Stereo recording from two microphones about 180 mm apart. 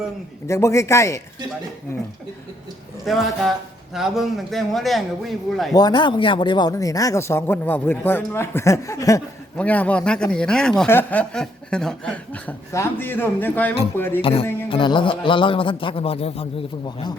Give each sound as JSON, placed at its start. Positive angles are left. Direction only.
{"t": 0.4, "sound": "speech", "side_deg": 15}
{"t": 3.1, "sound": "a man's voice", "side_deg": 0}
{"t": 5.7, "sound": "speech", "side_deg": 25}
{"t": 14.2, "sound": "music", "side_deg": 30}
{"t": 14.7, "sound": "speech", "side_deg": 30}